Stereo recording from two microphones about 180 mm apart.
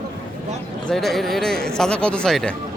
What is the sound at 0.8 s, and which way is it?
A man's voice, centre (ahead or behind).